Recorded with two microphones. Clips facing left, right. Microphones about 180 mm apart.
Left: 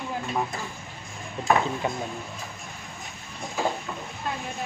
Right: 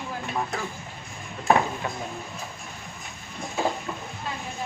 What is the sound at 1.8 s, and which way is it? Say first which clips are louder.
Speech: left 4 dB; 20° left (ahead or behind).